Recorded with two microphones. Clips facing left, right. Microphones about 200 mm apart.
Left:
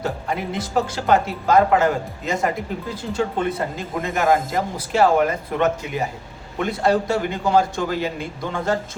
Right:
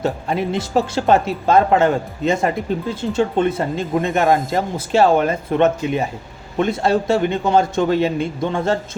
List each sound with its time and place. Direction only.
0.0 s speech: 25° right (ahead or behind)